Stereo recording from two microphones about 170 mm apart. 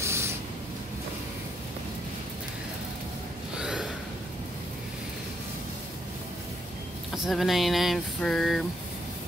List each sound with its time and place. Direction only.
0.0 s spray: 15° right (ahead or behind)
3.5 s gasp: 5° right (ahead or behind)
7.2 s a sound: centre (ahead or behind)